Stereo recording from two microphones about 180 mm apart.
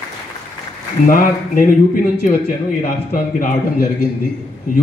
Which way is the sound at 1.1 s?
50° left (ahead or behind).